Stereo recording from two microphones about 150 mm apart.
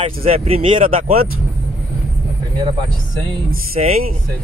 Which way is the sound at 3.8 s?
50° right (ahead or behind).